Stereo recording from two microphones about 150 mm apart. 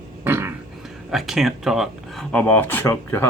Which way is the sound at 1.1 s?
Centre (ahead or behind).